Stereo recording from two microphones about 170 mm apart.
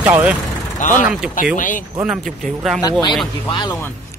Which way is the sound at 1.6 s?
50° left (ahead or behind).